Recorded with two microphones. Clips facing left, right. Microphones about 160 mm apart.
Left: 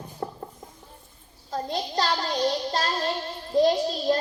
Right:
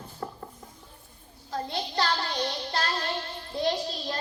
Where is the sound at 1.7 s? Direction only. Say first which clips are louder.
Left 3 dB; 40° left (ahead or behind).